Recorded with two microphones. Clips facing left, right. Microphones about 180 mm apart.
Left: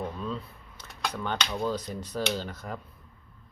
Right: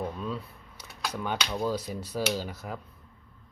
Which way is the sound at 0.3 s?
10° right (ahead or behind).